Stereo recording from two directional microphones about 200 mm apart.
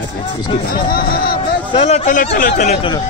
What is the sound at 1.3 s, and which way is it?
Speech, 30° left (ahead or behind).